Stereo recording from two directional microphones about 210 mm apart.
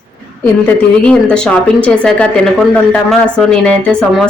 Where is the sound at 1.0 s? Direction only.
5° left (ahead or behind).